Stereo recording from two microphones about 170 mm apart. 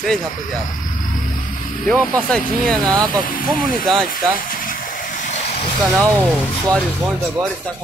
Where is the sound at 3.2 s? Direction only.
55° left (ahead or behind).